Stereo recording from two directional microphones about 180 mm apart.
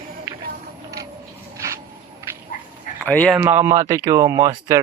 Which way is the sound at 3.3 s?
10° right (ahead or behind).